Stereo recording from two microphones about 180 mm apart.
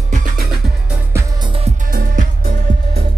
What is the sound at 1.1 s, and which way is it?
Music, 30° right (ahead or behind).